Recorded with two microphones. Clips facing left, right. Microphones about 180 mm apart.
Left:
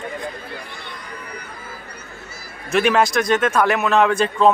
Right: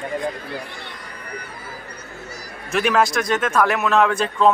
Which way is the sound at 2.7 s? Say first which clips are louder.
Left 2 dB; centre (ahead or behind).